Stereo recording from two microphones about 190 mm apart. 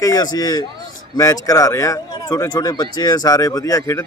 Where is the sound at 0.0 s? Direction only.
20° left (ahead or behind).